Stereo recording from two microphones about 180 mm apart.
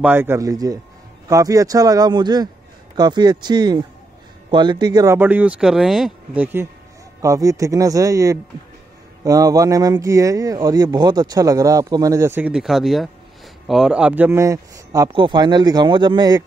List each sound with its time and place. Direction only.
0.0 s speech: 10° right (ahead or behind)